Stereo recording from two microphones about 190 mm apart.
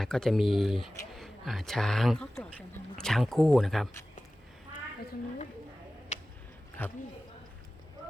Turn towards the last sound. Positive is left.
turn(degrees=10)  # may be behind; listen again after turning